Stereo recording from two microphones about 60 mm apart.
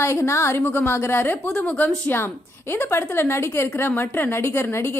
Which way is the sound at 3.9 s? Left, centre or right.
Left.